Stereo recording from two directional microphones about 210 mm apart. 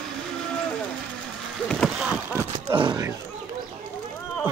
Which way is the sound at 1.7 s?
Centre (ahead or behind).